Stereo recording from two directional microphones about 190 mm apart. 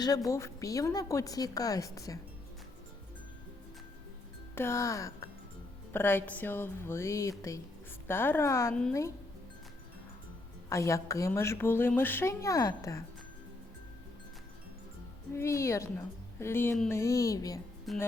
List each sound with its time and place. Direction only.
0.0 s a woman's voice: 20° left (ahead or behind)
4.5 s a woman's voice: 15° left (ahead or behind)
10.7 s a woman's voice: 15° left (ahead or behind)
15.3 s a woman's voice: 15° left (ahead or behind)
17.9 s speech: centre (ahead or behind)